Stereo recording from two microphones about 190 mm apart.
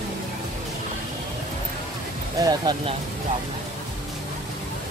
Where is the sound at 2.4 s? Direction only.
20° right (ahead or behind).